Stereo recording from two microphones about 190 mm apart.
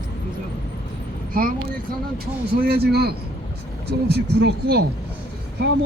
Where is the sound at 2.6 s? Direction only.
55° right (ahead or behind).